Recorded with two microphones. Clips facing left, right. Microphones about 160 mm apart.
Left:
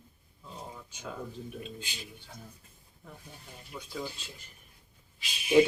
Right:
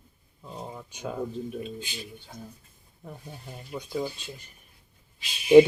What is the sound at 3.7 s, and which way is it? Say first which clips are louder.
Speech: right 8 dB; 30° right (ahead or behind).